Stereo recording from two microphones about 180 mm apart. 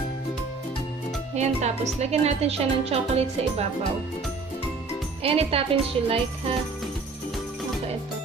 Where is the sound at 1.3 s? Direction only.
40° right (ahead or behind).